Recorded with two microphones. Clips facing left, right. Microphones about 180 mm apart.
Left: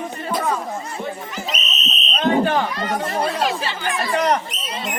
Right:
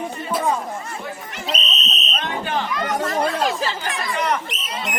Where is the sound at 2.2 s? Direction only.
40° left (ahead or behind).